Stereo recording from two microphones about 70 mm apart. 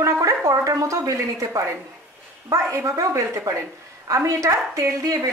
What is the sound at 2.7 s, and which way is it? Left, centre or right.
A woman's voice, right.